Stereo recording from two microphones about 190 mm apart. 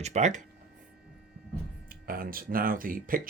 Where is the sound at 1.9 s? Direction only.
50° right (ahead or behind).